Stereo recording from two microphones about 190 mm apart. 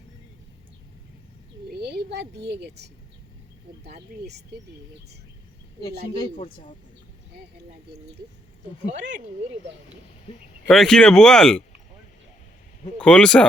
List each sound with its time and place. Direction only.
1.8 s a woman's voice: 60° right (ahead or behind)
6.1 s speech: 30° left (ahead or behind)
10.7 s speech: centre (ahead or behind)
13.0 s speech: 5° left (ahead or behind)